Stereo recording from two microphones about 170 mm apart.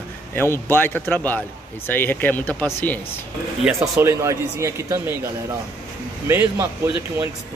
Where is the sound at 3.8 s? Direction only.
15° right (ahead or behind).